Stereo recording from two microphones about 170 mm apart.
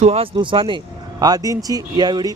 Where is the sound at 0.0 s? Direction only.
40° right (ahead or behind).